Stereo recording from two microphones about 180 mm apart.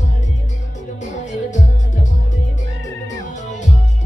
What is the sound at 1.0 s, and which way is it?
Music, 45° left (ahead or behind).